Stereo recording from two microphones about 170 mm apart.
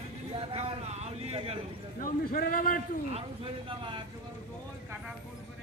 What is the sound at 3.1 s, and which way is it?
Speech, 30° right (ahead or behind).